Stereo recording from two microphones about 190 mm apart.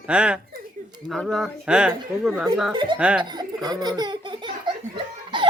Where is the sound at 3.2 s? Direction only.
20° right (ahead or behind).